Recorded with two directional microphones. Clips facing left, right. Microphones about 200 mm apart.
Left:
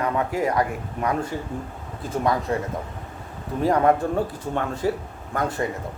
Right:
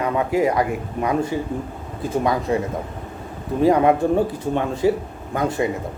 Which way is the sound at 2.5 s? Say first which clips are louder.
Right 4 dB; 15° right (ahead or behind).